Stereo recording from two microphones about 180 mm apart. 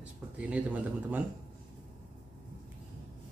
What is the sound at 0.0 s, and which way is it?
Speech, 5° right (ahead or behind).